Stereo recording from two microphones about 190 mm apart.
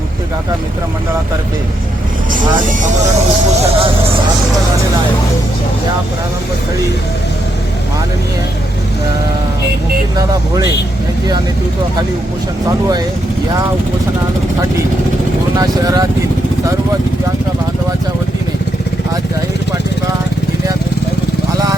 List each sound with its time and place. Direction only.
2.3 s speech: 40° right (ahead or behind)
3.6 s speech: 30° right (ahead or behind)
10.2 s speech: 20° right (ahead or behind)
15.5 s speech: 20° right (ahead or behind)